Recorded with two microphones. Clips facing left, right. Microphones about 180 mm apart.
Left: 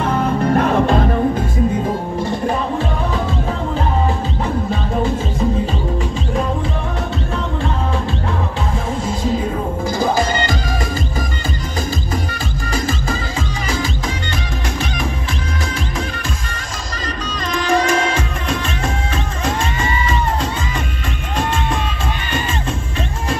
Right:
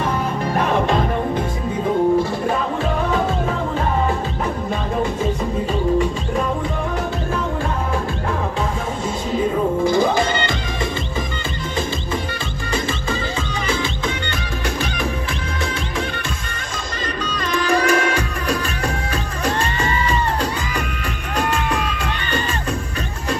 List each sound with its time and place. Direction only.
9.8 s music: 40° left (ahead or behind)
17.6 s music: 30° left (ahead or behind)
17.8 s music: 35° right (ahead or behind)